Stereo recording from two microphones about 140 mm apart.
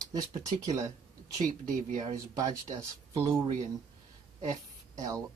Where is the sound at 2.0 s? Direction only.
30° right (ahead or behind).